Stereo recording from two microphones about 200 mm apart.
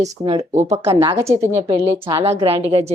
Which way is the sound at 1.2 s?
15° right (ahead or behind).